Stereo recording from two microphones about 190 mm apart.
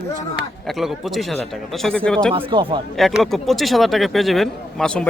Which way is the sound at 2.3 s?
25° right (ahead or behind).